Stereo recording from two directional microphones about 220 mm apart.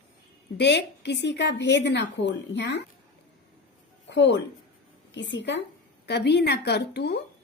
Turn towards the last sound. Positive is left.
turn(degrees=50)  # may be behind; listen again after turning